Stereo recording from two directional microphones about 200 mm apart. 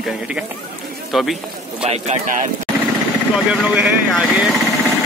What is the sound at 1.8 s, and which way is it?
Speech, 40° right (ahead or behind).